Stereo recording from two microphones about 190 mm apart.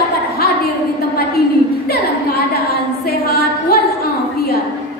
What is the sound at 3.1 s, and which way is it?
Music, 55° left (ahead or behind).